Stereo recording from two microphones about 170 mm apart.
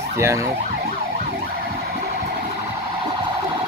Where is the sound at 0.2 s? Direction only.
15° right (ahead or behind).